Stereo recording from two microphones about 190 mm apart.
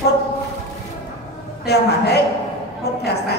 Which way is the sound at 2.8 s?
60° left (ahead or behind).